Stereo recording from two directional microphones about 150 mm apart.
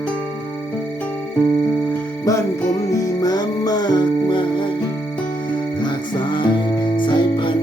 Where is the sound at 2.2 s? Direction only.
20° left (ahead or behind).